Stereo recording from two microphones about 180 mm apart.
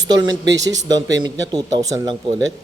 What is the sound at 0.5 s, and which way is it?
Speech, 20° right (ahead or behind).